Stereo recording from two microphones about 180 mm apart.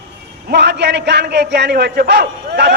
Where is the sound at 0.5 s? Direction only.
70° right (ahead or behind).